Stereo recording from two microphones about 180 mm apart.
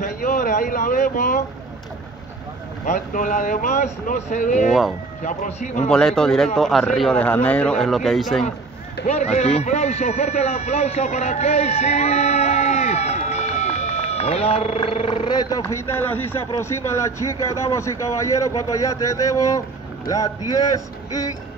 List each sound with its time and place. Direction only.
0.0 s speech: 45° left (ahead or behind)
2.8 s speech: 45° left (ahead or behind)
5.9 s speech: 5° left (ahead or behind)
9.0 s a man's voice: 40° left (ahead or behind); by 21.3 s 20° left (ahead or behind)